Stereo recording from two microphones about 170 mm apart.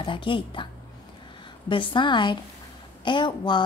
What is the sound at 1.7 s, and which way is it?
Speech, 30° left (ahead or behind).